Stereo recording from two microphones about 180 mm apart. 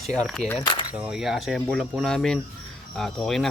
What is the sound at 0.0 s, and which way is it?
Speech, centre (ahead or behind).